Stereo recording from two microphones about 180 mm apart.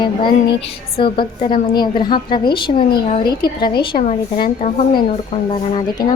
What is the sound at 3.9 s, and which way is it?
A woman's voice, 35° left (ahead or behind).